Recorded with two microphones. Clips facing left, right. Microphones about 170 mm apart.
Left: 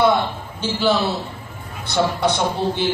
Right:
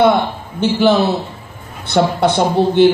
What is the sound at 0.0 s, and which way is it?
Speech, 60° right (ahead or behind).